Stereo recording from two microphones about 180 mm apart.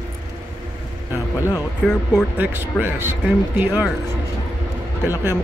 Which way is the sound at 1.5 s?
10° left (ahead or behind).